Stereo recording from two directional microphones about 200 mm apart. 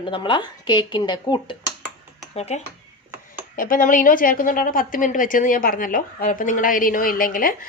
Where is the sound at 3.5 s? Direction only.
40° left (ahead or behind).